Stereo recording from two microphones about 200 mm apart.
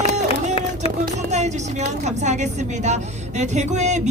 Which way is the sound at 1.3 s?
35° right (ahead or behind).